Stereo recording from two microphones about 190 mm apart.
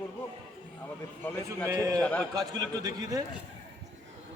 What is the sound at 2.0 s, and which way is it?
Speech, 10° left (ahead or behind).